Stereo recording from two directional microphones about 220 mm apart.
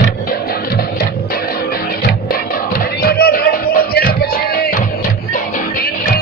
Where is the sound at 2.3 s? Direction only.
45° left (ahead or behind).